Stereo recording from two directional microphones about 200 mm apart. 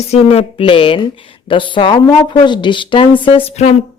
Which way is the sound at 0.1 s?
30° left (ahead or behind).